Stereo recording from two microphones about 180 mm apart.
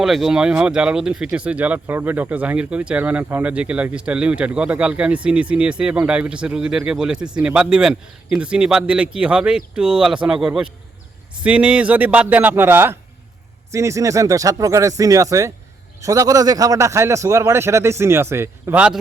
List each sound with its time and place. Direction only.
0.0 s a man's voice: centre (ahead or behind)